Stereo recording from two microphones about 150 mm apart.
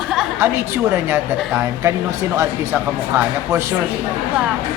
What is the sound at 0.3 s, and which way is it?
A woman's voice, 15° right (ahead or behind).